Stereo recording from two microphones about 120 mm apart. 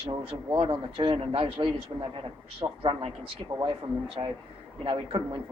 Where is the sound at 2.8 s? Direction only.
50° right (ahead or behind).